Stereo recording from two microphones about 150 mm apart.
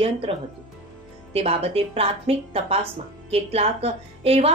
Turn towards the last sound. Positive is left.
turn(degrees=-40)  # may be behind; listen again after turning